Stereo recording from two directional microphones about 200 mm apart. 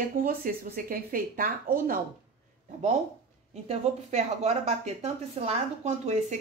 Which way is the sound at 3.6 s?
30° right (ahead or behind).